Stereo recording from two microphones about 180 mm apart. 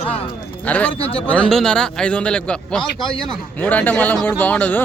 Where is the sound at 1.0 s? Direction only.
30° left (ahead or behind).